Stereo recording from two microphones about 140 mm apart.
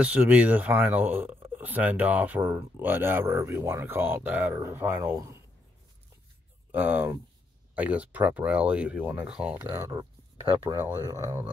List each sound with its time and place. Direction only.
0.0 s speech: 10° right (ahead or behind)
6.7 s speech: 15° right (ahead or behind)
9.7 s speech: 25° right (ahead or behind)